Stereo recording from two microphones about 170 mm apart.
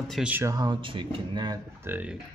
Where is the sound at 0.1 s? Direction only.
10° right (ahead or behind); by 1.6 s 25° right (ahead or behind).